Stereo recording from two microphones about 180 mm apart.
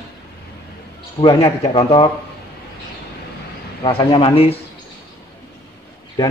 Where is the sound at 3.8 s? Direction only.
30° left (ahead or behind).